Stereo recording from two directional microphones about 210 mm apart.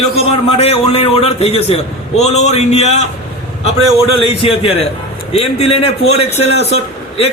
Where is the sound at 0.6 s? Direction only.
30° left (ahead or behind).